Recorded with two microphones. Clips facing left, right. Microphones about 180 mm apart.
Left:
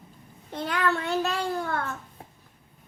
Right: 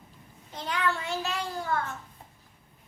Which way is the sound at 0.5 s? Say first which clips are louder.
Left 4 dB; 60° left (ahead or behind).